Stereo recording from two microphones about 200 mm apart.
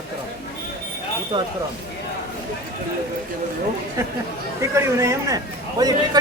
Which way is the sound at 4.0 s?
15° right (ahead or behind).